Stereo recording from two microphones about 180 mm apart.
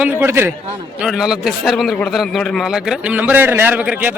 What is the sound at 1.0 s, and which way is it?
A man's voice, centre (ahead or behind).